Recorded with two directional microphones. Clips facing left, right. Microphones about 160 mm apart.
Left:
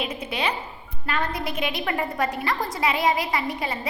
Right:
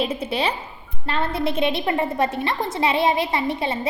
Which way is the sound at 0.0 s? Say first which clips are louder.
Right 4 dB; 30° right (ahead or behind).